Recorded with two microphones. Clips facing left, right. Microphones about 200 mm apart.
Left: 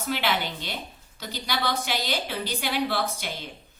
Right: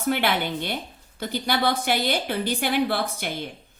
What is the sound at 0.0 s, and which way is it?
A woman's voice, 55° right (ahead or behind).